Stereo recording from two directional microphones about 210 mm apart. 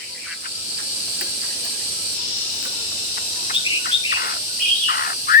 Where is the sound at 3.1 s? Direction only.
45° left (ahead or behind).